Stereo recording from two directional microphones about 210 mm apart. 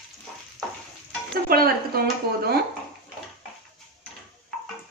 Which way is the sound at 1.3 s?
45° right (ahead or behind).